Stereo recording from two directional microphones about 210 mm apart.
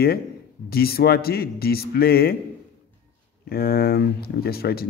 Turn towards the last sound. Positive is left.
turn(degrees=45)  # may be behind; listen again after turning